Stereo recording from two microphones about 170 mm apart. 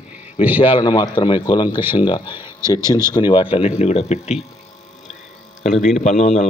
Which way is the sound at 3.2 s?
25° left (ahead or behind).